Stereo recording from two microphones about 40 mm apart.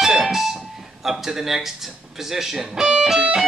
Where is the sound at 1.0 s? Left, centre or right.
Centre.